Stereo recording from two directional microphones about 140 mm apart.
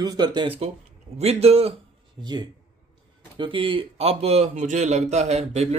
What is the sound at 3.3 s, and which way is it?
Speech, 35° right (ahead or behind).